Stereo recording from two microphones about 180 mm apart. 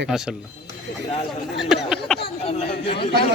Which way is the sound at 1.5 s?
Centre (ahead or behind).